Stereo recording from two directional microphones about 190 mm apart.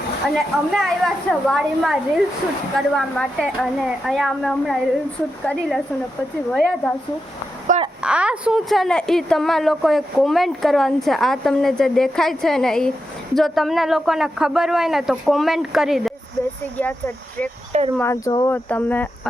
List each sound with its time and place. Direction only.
0.3 s speech: centre (ahead or behind)
7.7 s a sound: 45° right (ahead or behind)
8.0 s speech: 5° right (ahead or behind)
17.7 s speech: 35° right (ahead or behind)
17.9 s speech: 15° left (ahead or behind)